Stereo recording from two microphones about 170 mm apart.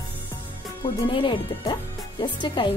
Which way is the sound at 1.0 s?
30° left (ahead or behind).